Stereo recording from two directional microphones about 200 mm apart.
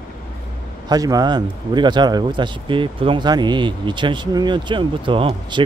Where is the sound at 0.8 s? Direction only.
20° right (ahead or behind).